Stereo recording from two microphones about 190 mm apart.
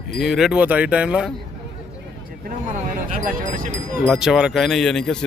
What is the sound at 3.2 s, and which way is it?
Speech, 40° right (ahead or behind).